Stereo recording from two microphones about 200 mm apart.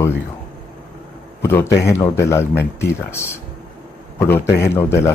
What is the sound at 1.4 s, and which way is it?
A man's voice, 15° left (ahead or behind).